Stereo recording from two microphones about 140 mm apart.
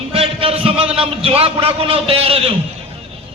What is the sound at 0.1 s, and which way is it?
A man's voice, 40° right (ahead or behind).